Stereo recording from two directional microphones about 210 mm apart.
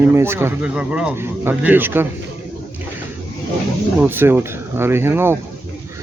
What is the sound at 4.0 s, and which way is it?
Speech, 10° right (ahead or behind).